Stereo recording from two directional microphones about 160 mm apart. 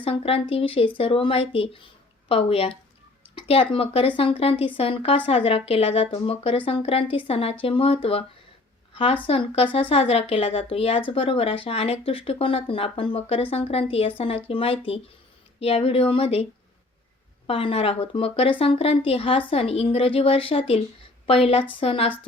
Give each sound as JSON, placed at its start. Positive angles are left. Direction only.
{"t": 0.0, "sound": "a woman's voice", "side_deg": 35}
{"t": 9.2, "sound": "a woman's voice", "side_deg": 35}